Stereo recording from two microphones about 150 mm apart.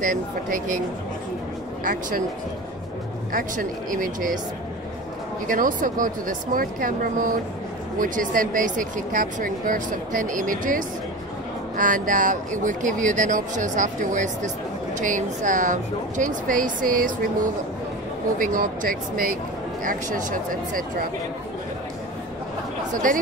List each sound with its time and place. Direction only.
0.0 s speech: 60° right (ahead or behind)
1.9 s speech: 65° right (ahead or behind)
3.3 s speech: 65° right (ahead or behind)
5.5 s speech: 65° right (ahead or behind)
18.4 s speech: 65° right (ahead or behind)